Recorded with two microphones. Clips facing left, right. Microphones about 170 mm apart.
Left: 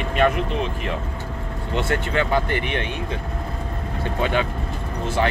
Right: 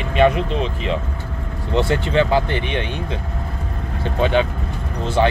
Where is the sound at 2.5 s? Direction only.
25° right (ahead or behind).